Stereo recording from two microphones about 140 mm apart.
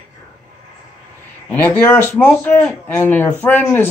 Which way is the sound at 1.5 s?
10° left (ahead or behind).